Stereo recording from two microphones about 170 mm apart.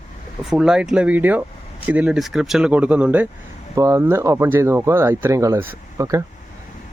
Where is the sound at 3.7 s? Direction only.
20° right (ahead or behind).